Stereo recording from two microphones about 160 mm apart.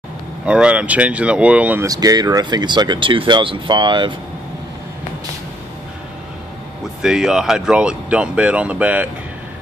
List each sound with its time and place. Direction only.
0.5 s speech: 5° right (ahead or behind)
1.9 s speech: 25° right (ahead or behind)
7.0 s speech: 5° right (ahead or behind)